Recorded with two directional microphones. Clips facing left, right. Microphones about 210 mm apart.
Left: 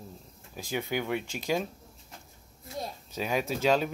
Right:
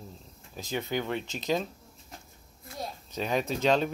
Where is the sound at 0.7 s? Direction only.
10° left (ahead or behind).